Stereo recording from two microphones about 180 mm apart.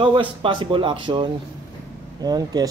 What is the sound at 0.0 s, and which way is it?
Speech, 25° right (ahead or behind).